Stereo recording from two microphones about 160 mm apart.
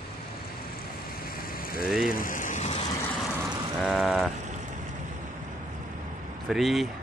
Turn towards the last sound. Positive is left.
turn(degrees=0)  # may be behind; listen again after turning